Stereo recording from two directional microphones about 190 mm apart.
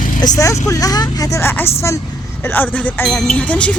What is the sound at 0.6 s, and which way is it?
Speech, 15° left (ahead or behind).